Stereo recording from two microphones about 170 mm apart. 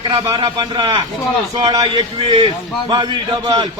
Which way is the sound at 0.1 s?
25° right (ahead or behind).